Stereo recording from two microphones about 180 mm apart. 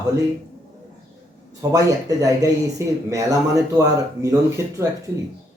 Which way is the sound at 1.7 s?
20° right (ahead or behind).